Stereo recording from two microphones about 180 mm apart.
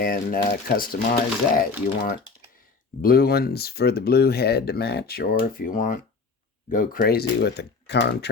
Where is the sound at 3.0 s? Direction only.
55° left (ahead or behind).